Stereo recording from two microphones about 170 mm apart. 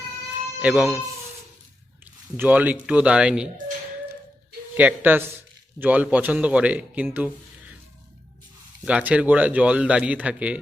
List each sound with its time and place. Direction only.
0.6 s a man's voice: 10° right (ahead or behind)
2.3 s a man's voice: 10° right (ahead or behind)
4.8 s a man's voice: 10° right (ahead or behind)
8.8 s a man's voice: 5° right (ahead or behind)